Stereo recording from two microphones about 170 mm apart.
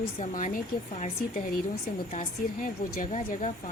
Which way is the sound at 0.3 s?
50° left (ahead or behind).